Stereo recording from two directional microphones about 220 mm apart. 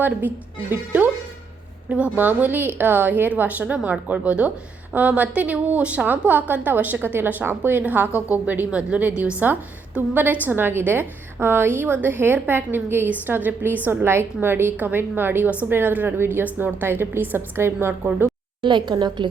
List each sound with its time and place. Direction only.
0.0 s a woman's voice: 10° right (ahead or behind)
18.6 s a woman's voice: 20° right (ahead or behind)